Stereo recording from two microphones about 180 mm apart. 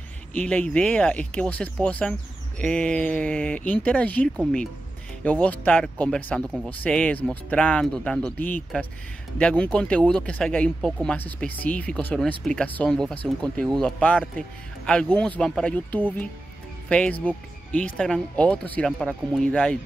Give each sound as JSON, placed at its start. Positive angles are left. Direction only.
{"t": 0.3, "sound": "speech", "side_deg": 10}